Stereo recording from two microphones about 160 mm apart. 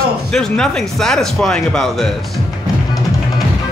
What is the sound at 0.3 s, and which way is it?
Speech, 5° left (ahead or behind).